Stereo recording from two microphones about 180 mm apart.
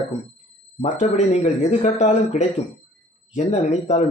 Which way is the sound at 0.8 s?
40° left (ahead or behind).